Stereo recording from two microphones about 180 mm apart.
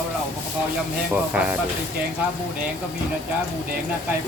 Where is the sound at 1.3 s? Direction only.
10° right (ahead or behind).